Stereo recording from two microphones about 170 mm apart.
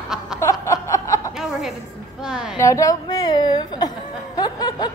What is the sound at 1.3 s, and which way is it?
Music, centre (ahead or behind).